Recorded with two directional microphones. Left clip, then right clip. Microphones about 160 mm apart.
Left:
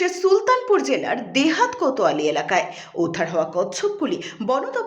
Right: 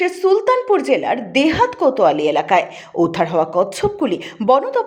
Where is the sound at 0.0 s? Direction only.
20° right (ahead or behind).